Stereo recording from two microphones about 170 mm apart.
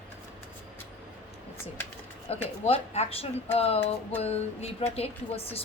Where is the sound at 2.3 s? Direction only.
35° left (ahead or behind).